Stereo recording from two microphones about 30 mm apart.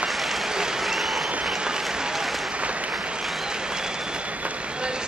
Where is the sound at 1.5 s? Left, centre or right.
Right.